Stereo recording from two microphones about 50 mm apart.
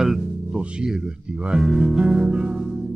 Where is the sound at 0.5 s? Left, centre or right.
Right.